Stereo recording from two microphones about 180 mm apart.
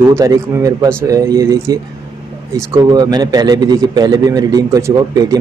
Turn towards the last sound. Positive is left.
turn(degrees=-20)  # may be behind; listen again after turning